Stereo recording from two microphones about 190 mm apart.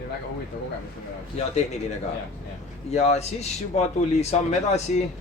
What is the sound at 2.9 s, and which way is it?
Speech, 35° left (ahead or behind).